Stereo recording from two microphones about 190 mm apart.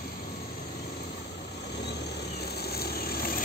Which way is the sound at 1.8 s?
60° left (ahead or behind).